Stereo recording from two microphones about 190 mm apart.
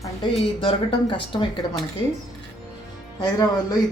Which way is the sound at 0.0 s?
25° left (ahead or behind).